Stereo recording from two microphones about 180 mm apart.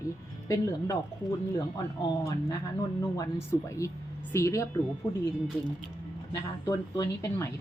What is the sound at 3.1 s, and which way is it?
Speech, 15° left (ahead or behind).